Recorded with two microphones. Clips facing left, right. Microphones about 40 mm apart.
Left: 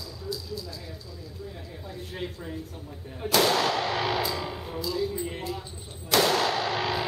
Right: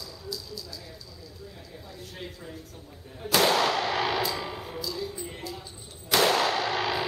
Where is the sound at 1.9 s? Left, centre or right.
Left.